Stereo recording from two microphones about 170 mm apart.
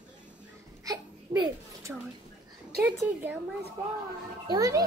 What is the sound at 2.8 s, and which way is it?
Speech, 10° right (ahead or behind).